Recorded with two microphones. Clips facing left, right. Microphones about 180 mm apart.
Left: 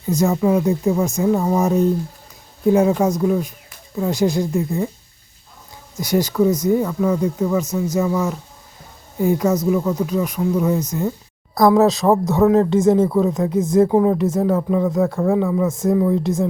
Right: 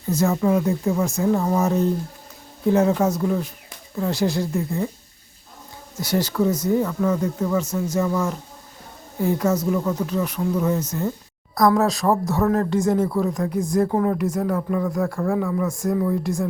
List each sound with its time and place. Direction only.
0.1 s speech: 15° left (ahead or behind)
6.0 s speech: 15° left (ahead or behind)
11.5 s speech: 25° left (ahead or behind)